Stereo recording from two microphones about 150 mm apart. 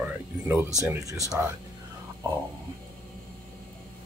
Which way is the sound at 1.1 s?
20° left (ahead or behind).